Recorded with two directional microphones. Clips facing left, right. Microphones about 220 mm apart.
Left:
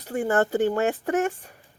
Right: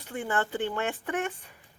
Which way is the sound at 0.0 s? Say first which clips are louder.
Left 8 dB; 40° left (ahead or behind).